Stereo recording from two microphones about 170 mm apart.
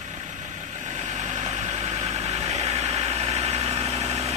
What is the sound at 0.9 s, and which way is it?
Vehicle, 40° right (ahead or behind).